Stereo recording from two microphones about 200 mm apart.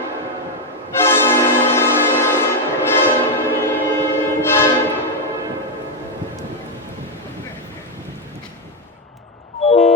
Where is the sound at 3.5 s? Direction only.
10° left (ahead or behind).